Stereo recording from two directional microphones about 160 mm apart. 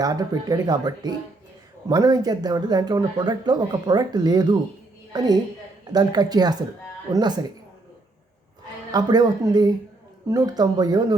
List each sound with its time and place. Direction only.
0.0 s speech: 25° right (ahead or behind)
8.9 s speech: 25° right (ahead or behind)